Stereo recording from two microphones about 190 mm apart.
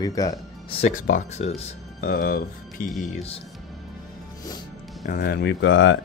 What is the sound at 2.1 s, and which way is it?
Speech, 50° left (ahead or behind).